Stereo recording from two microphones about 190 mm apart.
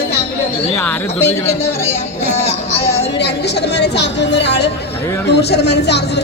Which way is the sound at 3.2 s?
60° left (ahead or behind).